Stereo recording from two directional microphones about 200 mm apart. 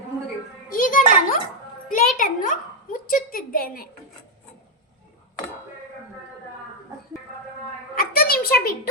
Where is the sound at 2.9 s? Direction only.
45° left (ahead or behind).